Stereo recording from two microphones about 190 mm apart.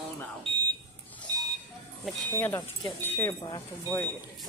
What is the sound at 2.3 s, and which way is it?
Speech, 15° left (ahead or behind).